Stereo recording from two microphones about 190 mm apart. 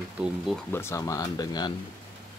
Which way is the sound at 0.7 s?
15° left (ahead or behind).